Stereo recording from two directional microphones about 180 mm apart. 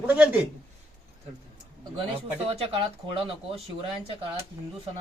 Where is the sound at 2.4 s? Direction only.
30° right (ahead or behind).